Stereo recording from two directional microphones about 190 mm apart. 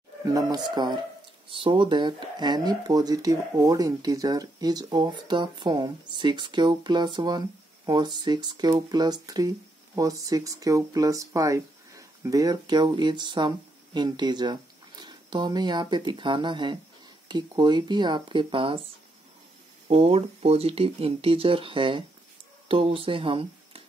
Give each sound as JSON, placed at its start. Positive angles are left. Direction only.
{"t": 0.2, "sound": "speech", "side_deg": -20}
{"t": 19.9, "sound": "speech", "side_deg": -30}